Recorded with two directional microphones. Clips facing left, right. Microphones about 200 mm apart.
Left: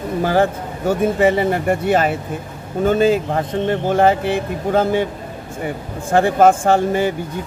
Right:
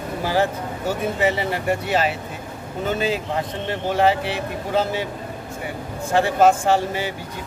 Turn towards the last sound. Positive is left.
turn(degrees=50)  # may be behind; listen again after turning